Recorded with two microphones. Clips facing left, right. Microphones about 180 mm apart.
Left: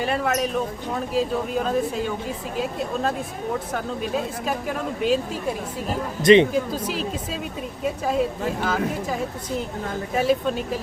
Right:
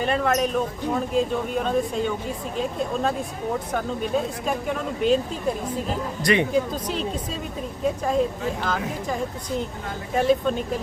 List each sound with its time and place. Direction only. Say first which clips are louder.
0.0 s a woman's voice: right 1 dB; 5° left (ahead or behind)
4.4 s a woman's voice: even; 5° left (ahead or behind)
6.2 s speech: left 8 dB; 20° left (ahead or behind)
6.5 s a woman's voice: right 1 dB; 5° left (ahead or behind)
10.2 s a woman's voice: right 1 dB; 5° left (ahead or behind)